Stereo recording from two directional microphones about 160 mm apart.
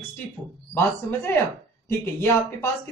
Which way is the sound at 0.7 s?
15° left (ahead or behind).